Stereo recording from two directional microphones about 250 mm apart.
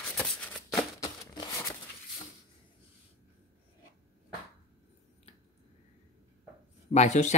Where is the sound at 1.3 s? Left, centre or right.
Centre.